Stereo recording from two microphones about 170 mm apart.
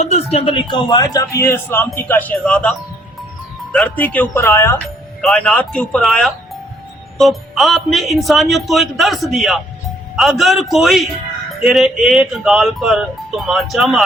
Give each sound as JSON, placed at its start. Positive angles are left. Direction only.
{"t": 0.0, "sound": "a man's voice", "side_deg": 40}
{"t": 5.2, "sound": "speech", "side_deg": 5}